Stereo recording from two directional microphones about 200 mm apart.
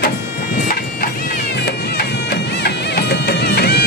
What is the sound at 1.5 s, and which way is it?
Music, 60° left (ahead or behind).